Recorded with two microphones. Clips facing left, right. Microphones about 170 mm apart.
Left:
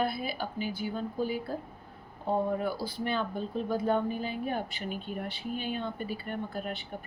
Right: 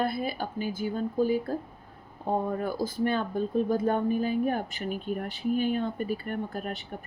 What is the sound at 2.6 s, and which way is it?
A woman's voice, 45° right (ahead or behind).